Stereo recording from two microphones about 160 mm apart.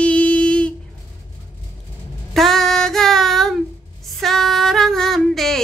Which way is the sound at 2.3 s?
Centre (ahead or behind).